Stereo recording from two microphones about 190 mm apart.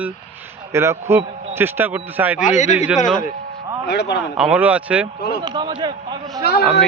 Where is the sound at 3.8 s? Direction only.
60° left (ahead or behind).